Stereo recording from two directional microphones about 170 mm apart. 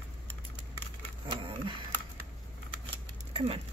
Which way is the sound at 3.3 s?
35° right (ahead or behind).